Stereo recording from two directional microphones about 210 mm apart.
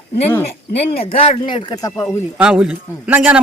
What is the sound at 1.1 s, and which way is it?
Speech, 25° left (ahead or behind).